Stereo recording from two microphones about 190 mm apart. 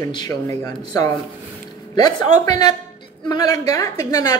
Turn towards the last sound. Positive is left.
turn(degrees=20)  # may be behind; listen again after turning